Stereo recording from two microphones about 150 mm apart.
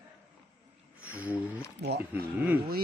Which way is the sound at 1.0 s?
10° right (ahead or behind).